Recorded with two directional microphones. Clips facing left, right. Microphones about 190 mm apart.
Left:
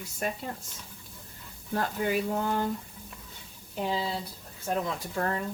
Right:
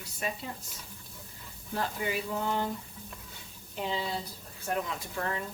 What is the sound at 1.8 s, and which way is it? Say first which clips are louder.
Speech: left 4 dB; 50° left (ahead or behind).